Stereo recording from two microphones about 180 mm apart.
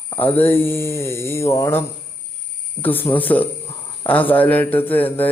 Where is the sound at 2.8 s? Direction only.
10° left (ahead or behind).